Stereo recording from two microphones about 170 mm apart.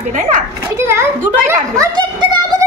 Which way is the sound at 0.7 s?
15° right (ahead or behind).